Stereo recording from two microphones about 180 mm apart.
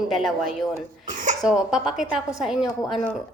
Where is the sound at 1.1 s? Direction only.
45° right (ahead or behind).